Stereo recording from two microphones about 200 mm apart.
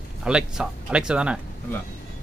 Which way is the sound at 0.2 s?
5° right (ahead or behind).